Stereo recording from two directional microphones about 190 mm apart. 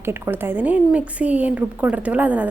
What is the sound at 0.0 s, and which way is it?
Speech, 10° right (ahead or behind).